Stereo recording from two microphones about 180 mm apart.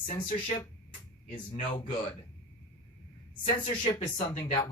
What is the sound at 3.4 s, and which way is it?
Speech, 30° left (ahead or behind).